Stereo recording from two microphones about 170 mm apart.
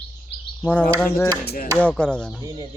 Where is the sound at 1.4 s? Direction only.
70° left (ahead or behind).